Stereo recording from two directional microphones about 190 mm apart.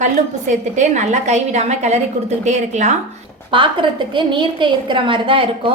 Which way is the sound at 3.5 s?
25° right (ahead or behind).